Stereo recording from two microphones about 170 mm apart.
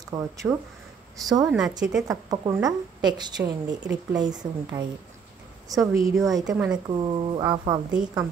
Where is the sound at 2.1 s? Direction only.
20° right (ahead or behind).